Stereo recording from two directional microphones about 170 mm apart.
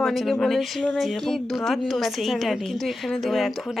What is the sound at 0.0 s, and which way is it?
Speech, centre (ahead or behind).